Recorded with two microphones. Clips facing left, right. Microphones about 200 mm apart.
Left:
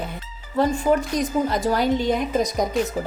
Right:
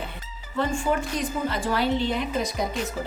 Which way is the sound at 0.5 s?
40° left (ahead or behind).